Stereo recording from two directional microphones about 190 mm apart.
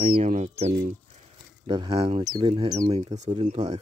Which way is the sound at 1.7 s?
25° right (ahead or behind).